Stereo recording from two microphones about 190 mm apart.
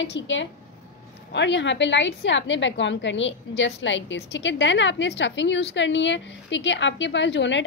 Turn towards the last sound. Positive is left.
turn(degrees=70)  # may be behind; listen again after turning